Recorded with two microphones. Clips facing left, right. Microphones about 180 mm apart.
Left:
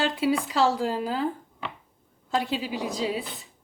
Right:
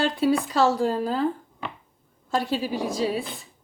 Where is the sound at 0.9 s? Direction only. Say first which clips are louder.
Right 3 dB; 10° left (ahead or behind).